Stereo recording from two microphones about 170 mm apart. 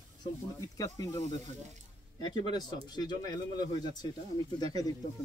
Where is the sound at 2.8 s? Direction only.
25° left (ahead or behind).